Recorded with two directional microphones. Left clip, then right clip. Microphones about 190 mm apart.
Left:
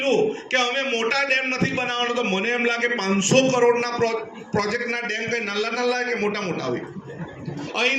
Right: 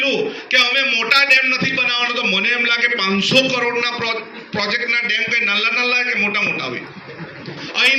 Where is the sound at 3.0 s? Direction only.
50° left (ahead or behind).